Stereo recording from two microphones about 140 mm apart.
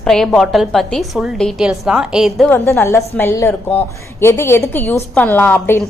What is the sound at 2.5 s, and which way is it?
A woman's voice, 15° left (ahead or behind).